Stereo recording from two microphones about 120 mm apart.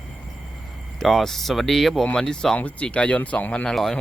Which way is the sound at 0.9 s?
5° left (ahead or behind).